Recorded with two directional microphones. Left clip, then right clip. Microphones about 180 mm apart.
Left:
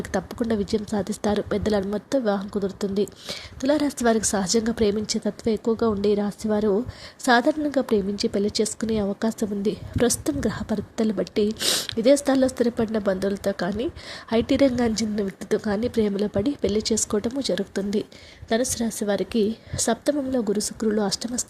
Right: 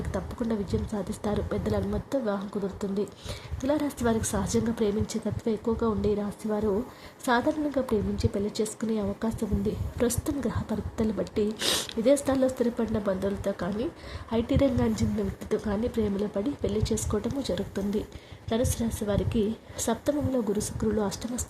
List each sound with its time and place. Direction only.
0.1 s a woman's voice: 20° left (ahead or behind)